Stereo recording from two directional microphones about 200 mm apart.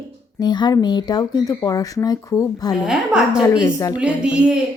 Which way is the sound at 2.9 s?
5° right (ahead or behind).